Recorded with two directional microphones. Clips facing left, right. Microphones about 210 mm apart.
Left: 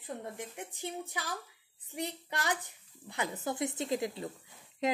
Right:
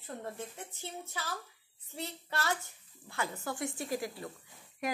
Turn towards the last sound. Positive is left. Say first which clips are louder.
# left 4 dB
turn(degrees=20)  # may be behind; listen again after turning